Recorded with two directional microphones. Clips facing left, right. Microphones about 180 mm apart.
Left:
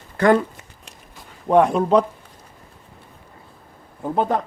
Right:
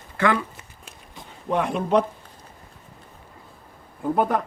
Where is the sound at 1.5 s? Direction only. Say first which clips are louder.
Left 8 dB; 45° left (ahead or behind).